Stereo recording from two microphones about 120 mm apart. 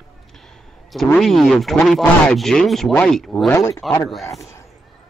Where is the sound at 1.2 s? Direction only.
Centre (ahead or behind).